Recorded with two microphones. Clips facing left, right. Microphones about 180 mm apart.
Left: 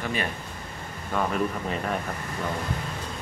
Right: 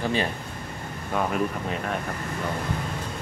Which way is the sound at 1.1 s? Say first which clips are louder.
Right 1 dB; 5° right (ahead or behind).